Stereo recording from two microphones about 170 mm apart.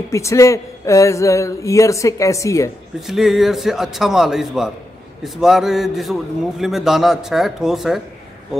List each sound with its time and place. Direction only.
0.1 s speech: 15° left (ahead or behind)
3.1 s a man's voice: centre (ahead or behind)